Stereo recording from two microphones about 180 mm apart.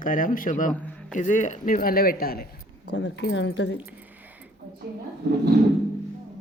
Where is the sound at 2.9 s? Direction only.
85° left.